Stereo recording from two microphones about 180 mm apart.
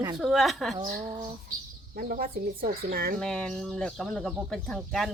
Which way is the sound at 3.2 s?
5° left (ahead or behind).